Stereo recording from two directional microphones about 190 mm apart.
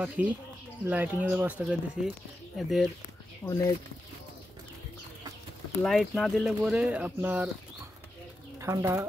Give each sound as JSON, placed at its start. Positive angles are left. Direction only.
{"t": 0.2, "sound": "speech", "side_deg": -10}
{"t": 3.4, "sound": "speech", "side_deg": 15}
{"t": 5.8, "sound": "speech", "side_deg": 0}
{"t": 8.5, "sound": "speech", "side_deg": -15}